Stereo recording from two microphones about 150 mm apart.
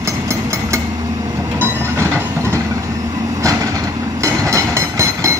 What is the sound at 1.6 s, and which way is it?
Train, 20° right (ahead or behind).